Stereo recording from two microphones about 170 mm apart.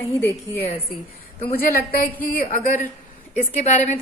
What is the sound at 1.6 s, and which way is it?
A woman's voice, 60° left (ahead or behind).